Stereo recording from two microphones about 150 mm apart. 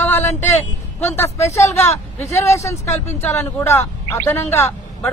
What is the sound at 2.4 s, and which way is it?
Speech, 20° left (ahead or behind).